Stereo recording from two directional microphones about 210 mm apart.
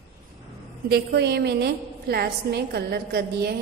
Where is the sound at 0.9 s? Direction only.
50° right (ahead or behind).